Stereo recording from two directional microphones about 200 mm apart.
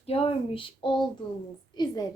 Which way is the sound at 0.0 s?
30° left (ahead or behind).